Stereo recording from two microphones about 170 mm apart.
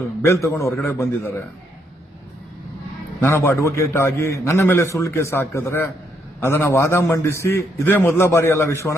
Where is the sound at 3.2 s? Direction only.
10° left (ahead or behind).